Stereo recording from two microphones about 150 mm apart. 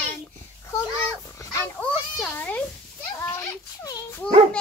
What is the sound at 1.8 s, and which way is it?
A child's voice, 10° left (ahead or behind).